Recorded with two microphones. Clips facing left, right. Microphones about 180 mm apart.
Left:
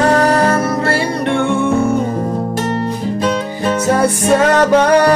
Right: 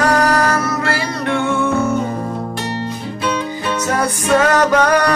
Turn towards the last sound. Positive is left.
turn(degrees=30)  # may be behind; listen again after turning